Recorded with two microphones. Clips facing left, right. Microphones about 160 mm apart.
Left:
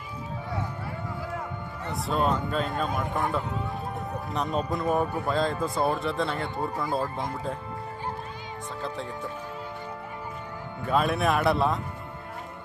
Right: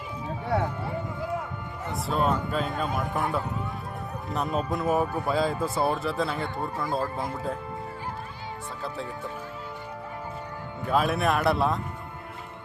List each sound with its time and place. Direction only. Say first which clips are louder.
0.5 s a sound: right 8 dB; 70° right (ahead or behind)
1.9 s speech: even; centre (ahead or behind)
10.8 s speech: even; centre (ahead or behind)